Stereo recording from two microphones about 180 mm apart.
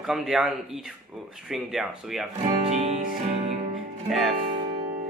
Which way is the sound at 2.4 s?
35° right (ahead or behind).